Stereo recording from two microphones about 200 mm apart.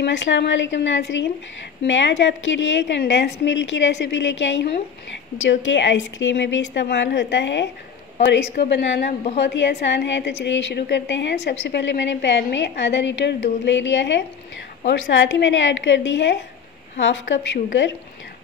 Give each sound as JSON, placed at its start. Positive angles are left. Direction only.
{"t": 0.0, "sound": "a woman's voice", "side_deg": 60}